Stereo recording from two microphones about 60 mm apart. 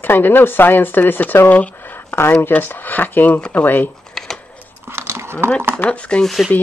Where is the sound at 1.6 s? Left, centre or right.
Left.